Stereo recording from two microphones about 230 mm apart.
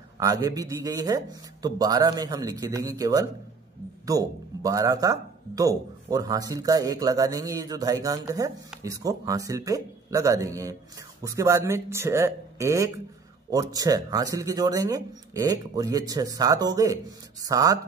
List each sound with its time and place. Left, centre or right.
0.2 s speech: centre